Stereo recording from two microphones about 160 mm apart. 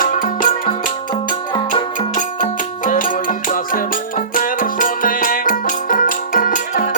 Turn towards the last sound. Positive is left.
turn(degrees=55)  # may be behind; listen again after turning